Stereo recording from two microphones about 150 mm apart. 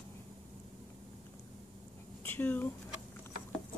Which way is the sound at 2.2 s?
15° left (ahead or behind).